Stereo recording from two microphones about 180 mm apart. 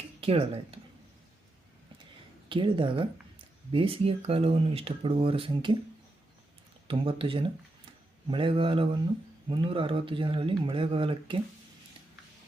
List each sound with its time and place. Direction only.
0.2 s speech: 30° right (ahead or behind)
2.5 s speech: 30° right (ahead or behind)
6.8 s speech: 30° right (ahead or behind)